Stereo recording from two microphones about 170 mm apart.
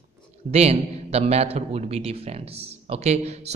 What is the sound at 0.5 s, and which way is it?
A man's voice, 40° right (ahead or behind).